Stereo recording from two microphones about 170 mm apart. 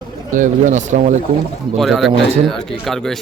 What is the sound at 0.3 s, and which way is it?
Speech, 50° right (ahead or behind).